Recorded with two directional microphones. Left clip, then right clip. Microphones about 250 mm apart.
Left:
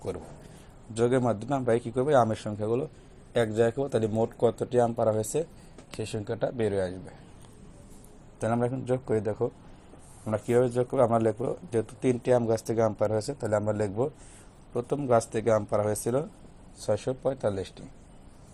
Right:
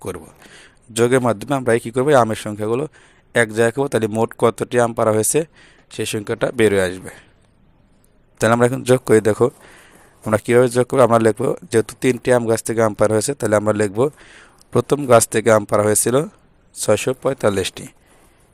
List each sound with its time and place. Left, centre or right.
1.0 s speech: right
8.4 s speech: right
12.5 s speech: right
13.0 s speech: right
16.7 s speech: right